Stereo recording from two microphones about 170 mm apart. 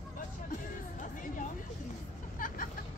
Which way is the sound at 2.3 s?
55° left (ahead or behind).